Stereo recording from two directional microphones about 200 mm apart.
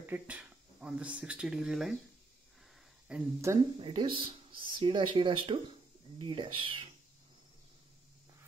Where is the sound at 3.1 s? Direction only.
15° right (ahead or behind).